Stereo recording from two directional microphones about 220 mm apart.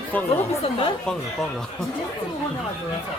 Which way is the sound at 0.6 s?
25° left (ahead or behind).